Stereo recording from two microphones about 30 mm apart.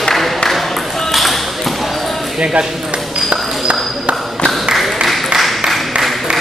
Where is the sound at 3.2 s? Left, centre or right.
Centre.